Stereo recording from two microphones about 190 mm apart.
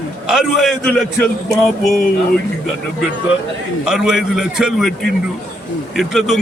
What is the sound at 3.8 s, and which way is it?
A man's voice, centre (ahead or behind).